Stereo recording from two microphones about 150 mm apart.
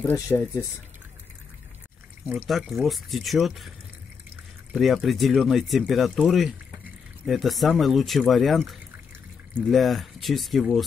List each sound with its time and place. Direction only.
0.1 s speech: 20° left (ahead or behind)
2.2 s speech: centre (ahead or behind)
4.7 s speech: centre (ahead or behind)